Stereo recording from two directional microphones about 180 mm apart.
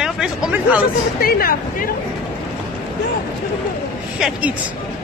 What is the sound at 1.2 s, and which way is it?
Speech, 55° left (ahead or behind).